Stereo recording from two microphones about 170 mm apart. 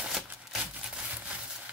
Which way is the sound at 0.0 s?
5° right (ahead or behind).